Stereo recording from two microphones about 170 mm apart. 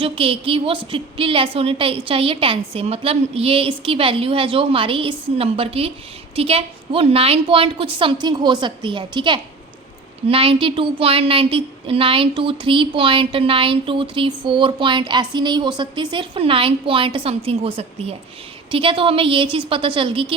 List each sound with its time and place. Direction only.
0.0 s a woman's voice: 35° right (ahead or behind)